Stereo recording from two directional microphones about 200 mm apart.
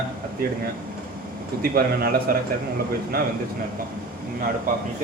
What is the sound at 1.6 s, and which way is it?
Speech, 50° right (ahead or behind).